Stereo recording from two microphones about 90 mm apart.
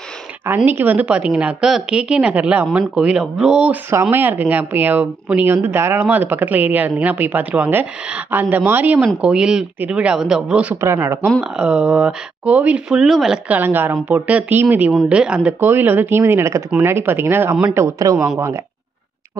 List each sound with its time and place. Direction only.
0.7 s a woman's voice: 20° right (ahead or behind)
4.1 s a woman's voice: 20° right (ahead or behind)
9.0 s a woman's voice: 10° right (ahead or behind)
10.8 s a woman's voice: 30° right (ahead or behind)
11.4 s a woman's voice: 10° right (ahead or behind)
13.5 s a woman's voice: 20° right (ahead or behind)
15.6 s a woman's voice: 25° right (ahead or behind)
17.7 s a man's voice: 40° right (ahead or behind)